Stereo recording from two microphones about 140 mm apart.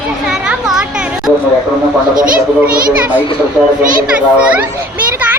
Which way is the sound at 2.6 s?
10° right (ahead or behind).